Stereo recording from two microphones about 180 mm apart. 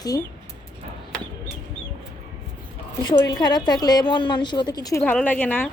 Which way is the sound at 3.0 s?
25° left (ahead or behind).